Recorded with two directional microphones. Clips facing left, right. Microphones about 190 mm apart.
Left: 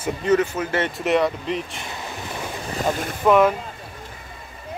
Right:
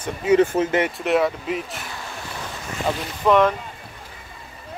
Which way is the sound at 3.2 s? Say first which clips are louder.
Left 1 dB; 5° left (ahead or behind).